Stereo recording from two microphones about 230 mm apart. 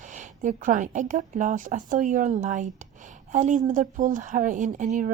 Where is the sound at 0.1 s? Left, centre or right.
Right.